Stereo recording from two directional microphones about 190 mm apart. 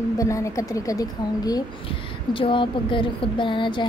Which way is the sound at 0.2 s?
15° left (ahead or behind).